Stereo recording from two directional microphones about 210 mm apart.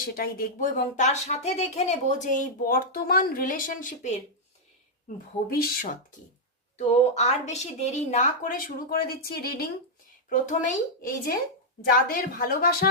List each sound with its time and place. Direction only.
0.0 s speech: 45° left (ahead or behind)
6.7 s speech: 30° left (ahead or behind)